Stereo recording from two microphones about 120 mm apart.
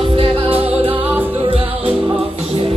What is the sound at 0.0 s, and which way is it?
Music, 45° right (ahead or behind).